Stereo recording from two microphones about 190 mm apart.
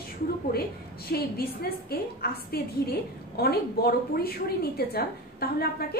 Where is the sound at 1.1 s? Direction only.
55° left (ahead or behind).